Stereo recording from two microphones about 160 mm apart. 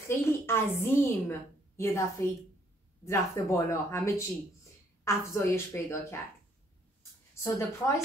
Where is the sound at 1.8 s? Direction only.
20° left (ahead or behind).